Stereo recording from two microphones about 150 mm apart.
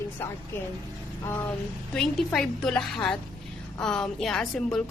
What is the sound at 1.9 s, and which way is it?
A woman's voice, 5° left (ahead or behind).